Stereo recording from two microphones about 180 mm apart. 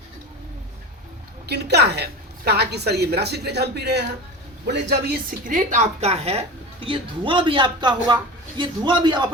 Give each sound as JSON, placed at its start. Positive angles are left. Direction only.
{"t": 1.5, "sound": "a woman's voice", "side_deg": -65}